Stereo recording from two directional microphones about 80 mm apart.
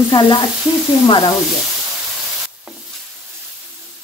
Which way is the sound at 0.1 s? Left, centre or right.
Left.